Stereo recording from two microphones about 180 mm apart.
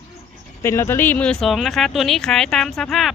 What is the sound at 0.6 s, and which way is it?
Speech, 15° left (ahead or behind).